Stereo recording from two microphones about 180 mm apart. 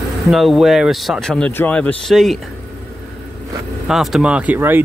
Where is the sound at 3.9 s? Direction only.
Centre (ahead or behind).